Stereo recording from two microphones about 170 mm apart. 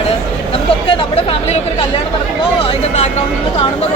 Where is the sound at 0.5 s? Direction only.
35° left (ahead or behind).